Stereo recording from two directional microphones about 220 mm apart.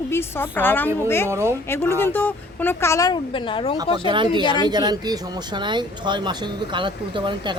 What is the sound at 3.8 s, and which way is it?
A woman's voice, 20° right (ahead or behind).